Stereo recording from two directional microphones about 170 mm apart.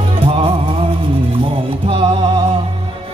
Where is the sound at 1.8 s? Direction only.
30° right (ahead or behind).